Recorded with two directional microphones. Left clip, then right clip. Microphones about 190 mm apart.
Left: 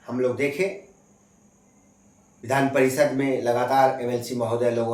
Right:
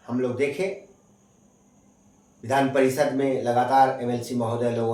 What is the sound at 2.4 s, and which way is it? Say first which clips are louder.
Speech: even; 25° left (ahead or behind).